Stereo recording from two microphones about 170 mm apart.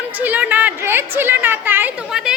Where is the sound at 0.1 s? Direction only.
10° right (ahead or behind).